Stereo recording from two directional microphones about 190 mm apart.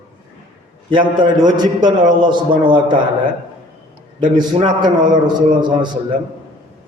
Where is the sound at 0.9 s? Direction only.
25° right (ahead or behind).